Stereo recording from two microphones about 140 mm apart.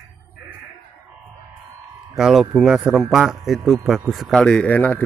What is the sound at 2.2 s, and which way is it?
Speech, centre (ahead or behind).